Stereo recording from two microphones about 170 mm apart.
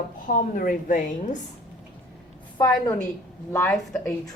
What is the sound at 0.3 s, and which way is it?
A woman's voice, 55° left (ahead or behind).